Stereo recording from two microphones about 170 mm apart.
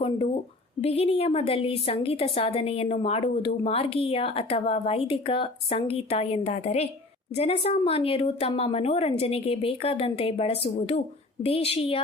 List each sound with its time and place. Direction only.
0.8 s a woman's voice: 35° left (ahead or behind)